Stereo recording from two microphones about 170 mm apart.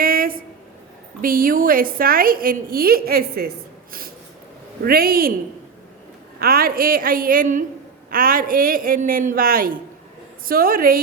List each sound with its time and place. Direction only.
0.0 s a sound: 60° right (ahead or behind)
1.2 s a woman's voice: 55° right (ahead or behind)
4.9 s a woman's voice: 60° right (ahead or behind)
6.4 s a woman's voice: 60° right (ahead or behind)